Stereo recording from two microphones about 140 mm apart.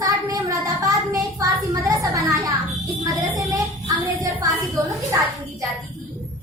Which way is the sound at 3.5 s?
25° right (ahead or behind).